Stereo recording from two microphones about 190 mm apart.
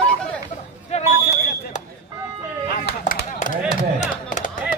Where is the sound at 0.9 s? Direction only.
35° left (ahead or behind).